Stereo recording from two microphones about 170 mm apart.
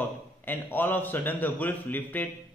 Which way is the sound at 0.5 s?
10° left (ahead or behind).